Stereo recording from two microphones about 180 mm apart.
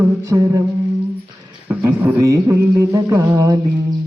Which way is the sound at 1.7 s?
10° right (ahead or behind).